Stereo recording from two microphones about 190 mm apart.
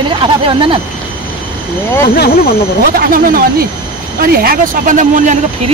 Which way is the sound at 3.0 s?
50° right (ahead or behind).